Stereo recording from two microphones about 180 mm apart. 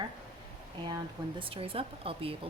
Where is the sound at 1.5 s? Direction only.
30° right (ahead or behind).